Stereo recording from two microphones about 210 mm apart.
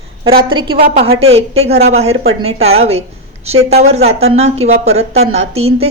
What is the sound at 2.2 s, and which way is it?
Speech, 80° right.